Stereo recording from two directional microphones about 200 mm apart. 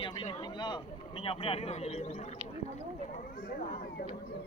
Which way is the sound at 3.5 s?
50° left (ahead or behind).